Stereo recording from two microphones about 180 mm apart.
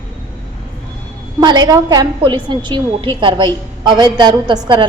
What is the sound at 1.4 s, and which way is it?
A woman's voice, 20° right (ahead or behind).